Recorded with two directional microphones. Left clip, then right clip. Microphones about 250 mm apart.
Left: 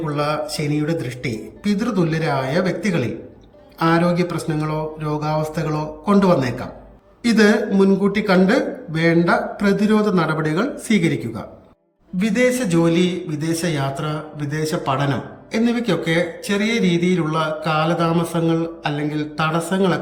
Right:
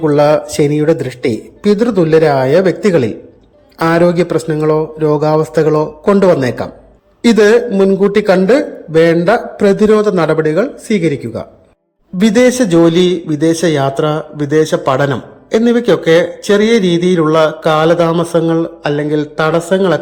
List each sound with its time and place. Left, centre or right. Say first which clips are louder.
0.0 s speech: right 12 dB; centre